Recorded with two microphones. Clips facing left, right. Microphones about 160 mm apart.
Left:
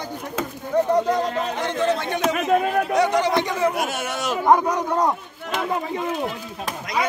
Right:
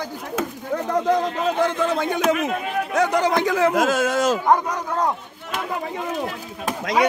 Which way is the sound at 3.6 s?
90° right.